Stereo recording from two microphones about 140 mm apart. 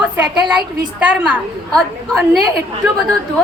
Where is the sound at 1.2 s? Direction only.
5° right (ahead or behind).